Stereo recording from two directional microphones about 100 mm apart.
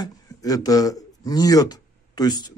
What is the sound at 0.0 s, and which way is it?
Speech, 35° left (ahead or behind).